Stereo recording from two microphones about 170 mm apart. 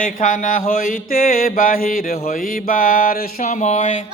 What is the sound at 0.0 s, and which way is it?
Mantra, 50° left (ahead or behind).